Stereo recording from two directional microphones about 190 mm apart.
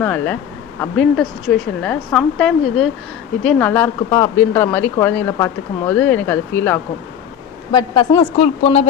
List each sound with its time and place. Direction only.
0.0 s a woman's voice: 10° left (ahead or behind)
7.7 s a woman's voice: 25° left (ahead or behind)